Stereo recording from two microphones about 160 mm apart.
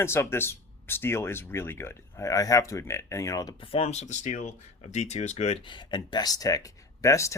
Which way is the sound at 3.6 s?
35° left (ahead or behind).